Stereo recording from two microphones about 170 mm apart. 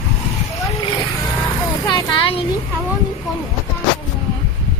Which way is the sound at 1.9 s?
30° left (ahead or behind).